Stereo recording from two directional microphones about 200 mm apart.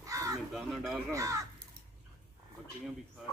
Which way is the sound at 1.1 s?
15° right (ahead or behind).